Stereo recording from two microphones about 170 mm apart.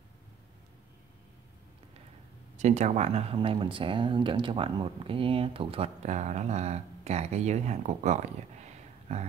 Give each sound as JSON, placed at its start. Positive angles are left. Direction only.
{"t": 2.5, "sound": "speech", "side_deg": -45}